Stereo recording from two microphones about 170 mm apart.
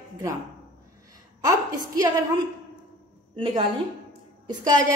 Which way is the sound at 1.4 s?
20° right (ahead or behind).